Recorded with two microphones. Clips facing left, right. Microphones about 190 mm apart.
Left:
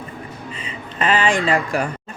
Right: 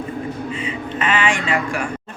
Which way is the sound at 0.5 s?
35° left (ahead or behind).